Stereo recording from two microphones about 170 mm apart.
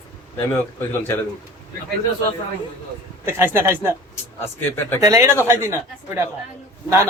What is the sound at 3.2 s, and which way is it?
Speech, 15° right (ahead or behind).